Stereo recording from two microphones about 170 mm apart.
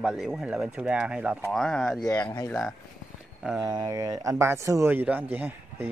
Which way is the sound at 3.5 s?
20° right (ahead or behind).